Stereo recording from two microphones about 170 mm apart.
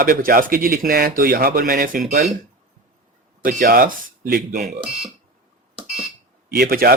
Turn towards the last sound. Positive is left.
turn(degrees=-60)  # may be behind; listen again after turning